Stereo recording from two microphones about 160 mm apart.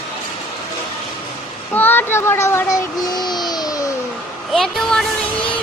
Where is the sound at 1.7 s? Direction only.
10° left (ahead or behind).